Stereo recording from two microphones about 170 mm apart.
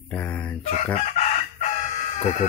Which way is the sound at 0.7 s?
40° left (ahead or behind).